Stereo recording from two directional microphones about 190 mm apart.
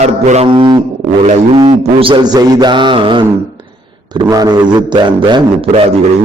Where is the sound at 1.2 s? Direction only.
35° right (ahead or behind).